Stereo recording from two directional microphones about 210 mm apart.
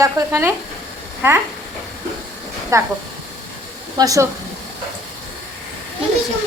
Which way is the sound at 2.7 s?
15° right (ahead or behind).